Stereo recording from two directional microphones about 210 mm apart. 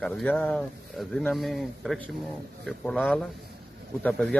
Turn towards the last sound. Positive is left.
turn(degrees=5)  # may be behind; listen again after turning